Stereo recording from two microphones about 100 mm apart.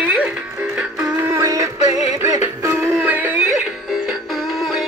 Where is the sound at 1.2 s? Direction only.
35° right (ahead or behind).